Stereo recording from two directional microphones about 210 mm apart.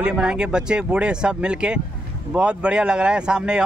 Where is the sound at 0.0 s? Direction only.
5° right (ahead or behind).